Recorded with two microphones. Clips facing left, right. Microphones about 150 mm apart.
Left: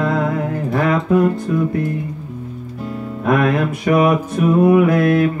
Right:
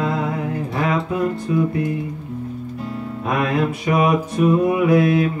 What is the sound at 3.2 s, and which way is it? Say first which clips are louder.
Music: left 4 dB; 55° left (ahead or behind).